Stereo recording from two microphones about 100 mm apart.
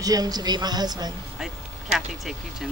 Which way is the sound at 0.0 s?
40° right (ahead or behind).